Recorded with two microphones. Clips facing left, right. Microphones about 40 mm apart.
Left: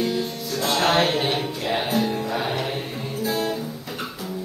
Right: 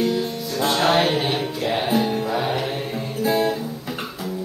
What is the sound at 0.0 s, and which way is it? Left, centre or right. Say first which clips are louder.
Music: right 3 dB; centre.